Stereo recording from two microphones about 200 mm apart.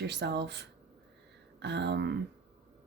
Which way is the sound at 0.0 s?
55° right (ahead or behind).